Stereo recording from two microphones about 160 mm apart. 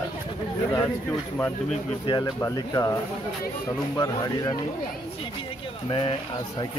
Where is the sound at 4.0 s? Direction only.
25° left (ahead or behind).